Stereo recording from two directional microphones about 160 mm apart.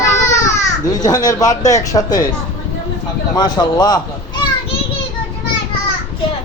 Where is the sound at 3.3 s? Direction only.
25° left (ahead or behind).